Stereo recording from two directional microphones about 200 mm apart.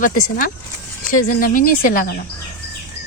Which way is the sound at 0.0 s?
40° left (ahead or behind).